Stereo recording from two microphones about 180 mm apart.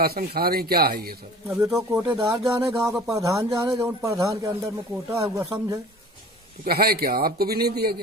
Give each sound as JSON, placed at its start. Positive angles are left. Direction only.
{"t": 0.0, "sound": "a man's voice", "side_deg": -60}
{"t": 1.8, "sound": "speech", "side_deg": -15}
{"t": 6.6, "sound": "a man's voice", "side_deg": -60}